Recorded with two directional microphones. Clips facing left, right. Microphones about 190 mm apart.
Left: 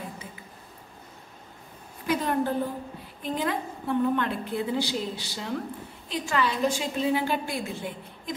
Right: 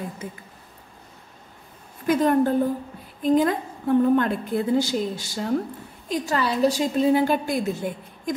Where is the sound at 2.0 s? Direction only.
50° right (ahead or behind).